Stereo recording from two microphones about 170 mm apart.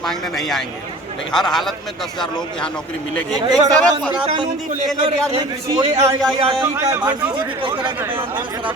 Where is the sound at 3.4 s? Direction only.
25° right (ahead or behind).